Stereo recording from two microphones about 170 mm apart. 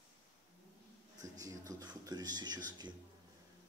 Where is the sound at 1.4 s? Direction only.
20° right (ahead or behind).